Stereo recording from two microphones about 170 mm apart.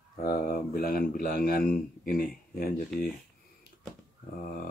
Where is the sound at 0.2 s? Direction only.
60° left (ahead or behind).